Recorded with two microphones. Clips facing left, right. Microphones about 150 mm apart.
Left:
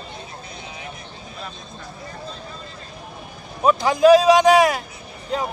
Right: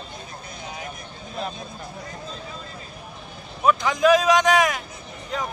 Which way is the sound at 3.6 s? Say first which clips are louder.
Left 4 dB; 35° left (ahead or behind).